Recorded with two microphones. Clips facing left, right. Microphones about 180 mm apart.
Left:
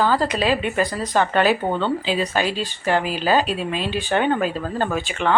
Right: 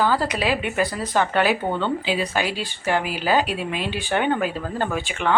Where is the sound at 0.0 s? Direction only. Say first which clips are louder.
Left 2 dB; 10° right (ahead or behind).